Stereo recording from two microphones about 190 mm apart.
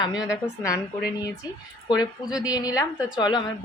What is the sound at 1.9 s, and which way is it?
Speech, 25° left (ahead or behind).